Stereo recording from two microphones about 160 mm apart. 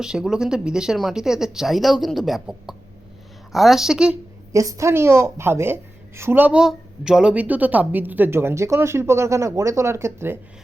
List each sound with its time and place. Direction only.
0.0 s speech: 5° right (ahead or behind)
4.5 s a woman's voice: 20° right (ahead or behind)